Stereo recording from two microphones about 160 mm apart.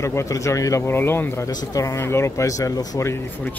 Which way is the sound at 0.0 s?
20° left (ahead or behind).